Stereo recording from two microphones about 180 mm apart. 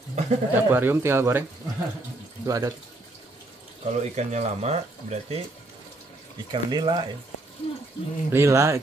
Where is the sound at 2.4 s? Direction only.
20° right (ahead or behind).